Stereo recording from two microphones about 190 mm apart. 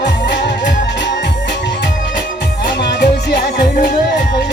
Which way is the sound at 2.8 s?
60° left (ahead or behind).